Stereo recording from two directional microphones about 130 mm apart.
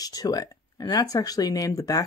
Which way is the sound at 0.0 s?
30° left (ahead or behind).